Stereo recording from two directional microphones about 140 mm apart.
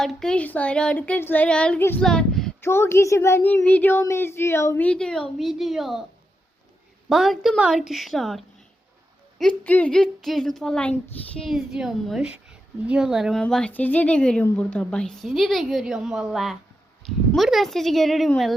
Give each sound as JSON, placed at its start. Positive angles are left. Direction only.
{"t": 0.0, "sound": "speech", "side_deg": 5}
{"t": 2.6, "sound": "speech", "side_deg": 15}
{"t": 4.9, "sound": "a woman's voice", "side_deg": 5}
{"t": 7.1, "sound": "a woman's voice", "side_deg": 0}